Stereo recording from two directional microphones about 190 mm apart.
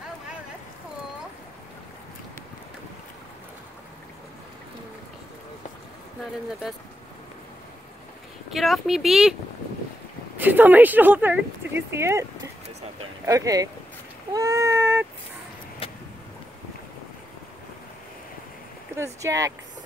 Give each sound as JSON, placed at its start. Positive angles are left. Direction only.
{"t": 8.5, "sound": "speech", "side_deg": 0}
{"t": 10.3, "sound": "speech", "side_deg": -10}
{"t": 14.3, "sound": "cat", "side_deg": -15}
{"t": 15.8, "sound": "vehicle", "side_deg": 30}
{"t": 18.9, "sound": "speech", "side_deg": -15}